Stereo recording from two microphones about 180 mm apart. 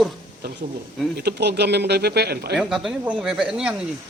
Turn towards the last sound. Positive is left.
turn(degrees=-5)  # may be behind; listen again after turning